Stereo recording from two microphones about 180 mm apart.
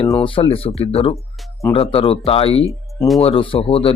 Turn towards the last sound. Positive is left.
turn(degrees=35)  # may be behind; listen again after turning